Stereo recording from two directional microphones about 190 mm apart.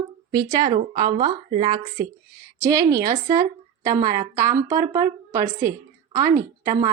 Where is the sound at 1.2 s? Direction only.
50° right (ahead or behind).